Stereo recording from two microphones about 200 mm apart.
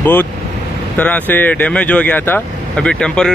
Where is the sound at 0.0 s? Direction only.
10° left (ahead or behind).